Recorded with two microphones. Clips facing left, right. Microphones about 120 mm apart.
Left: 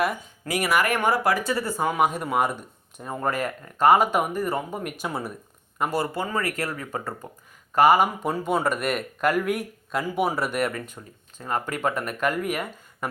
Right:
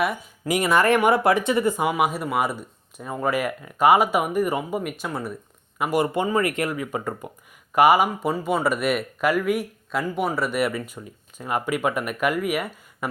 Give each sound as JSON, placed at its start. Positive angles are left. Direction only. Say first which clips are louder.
{"t": 0.4, "sound": "speech", "louder": "right 4 dB", "side_deg": -20}
{"t": 4.8, "sound": "speech", "louder": "right 1 dB", "side_deg": 0}
{"t": 5.8, "sound": "speech", "louder": "right 4 dB", "side_deg": -15}